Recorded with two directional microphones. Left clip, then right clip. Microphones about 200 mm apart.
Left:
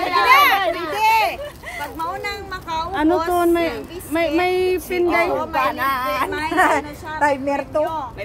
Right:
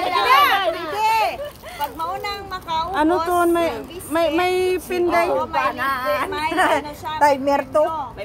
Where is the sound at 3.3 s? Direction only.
35° right (ahead or behind).